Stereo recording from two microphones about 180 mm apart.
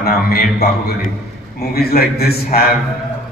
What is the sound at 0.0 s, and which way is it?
Speech, 60° left (ahead or behind).